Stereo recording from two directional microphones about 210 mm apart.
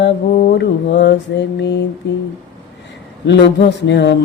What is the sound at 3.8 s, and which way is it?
Speech, 55° left (ahead or behind).